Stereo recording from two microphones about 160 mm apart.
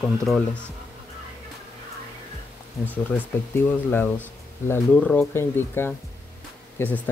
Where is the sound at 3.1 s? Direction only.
10° left (ahead or behind).